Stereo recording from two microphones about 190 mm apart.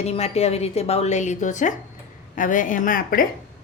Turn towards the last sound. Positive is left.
turn(degrees=45)  # may be behind; listen again after turning